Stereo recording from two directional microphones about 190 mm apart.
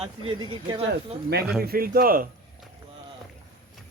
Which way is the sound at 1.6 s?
50° right (ahead or behind).